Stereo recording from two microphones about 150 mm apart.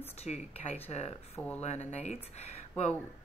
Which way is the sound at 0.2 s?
45° left (ahead or behind).